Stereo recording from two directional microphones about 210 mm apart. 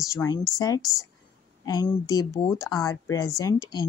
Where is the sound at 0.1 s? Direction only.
15° left (ahead or behind).